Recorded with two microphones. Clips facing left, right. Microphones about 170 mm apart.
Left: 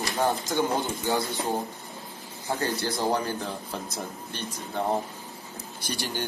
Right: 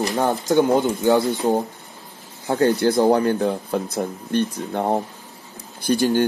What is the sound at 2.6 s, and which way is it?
Speech, 60° right (ahead or behind).